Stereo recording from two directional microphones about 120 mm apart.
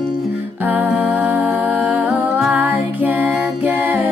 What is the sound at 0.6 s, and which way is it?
Music, 15° right (ahead or behind).